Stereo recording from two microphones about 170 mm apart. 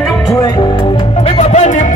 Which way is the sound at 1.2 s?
40° left (ahead or behind).